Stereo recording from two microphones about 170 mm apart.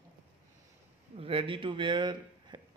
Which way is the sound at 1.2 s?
30° right (ahead or behind).